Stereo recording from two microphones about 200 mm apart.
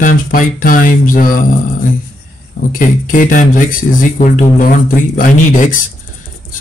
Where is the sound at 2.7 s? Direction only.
40° left (ahead or behind).